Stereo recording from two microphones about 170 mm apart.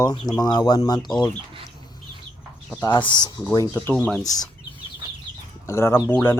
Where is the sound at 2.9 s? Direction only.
30° left (ahead or behind).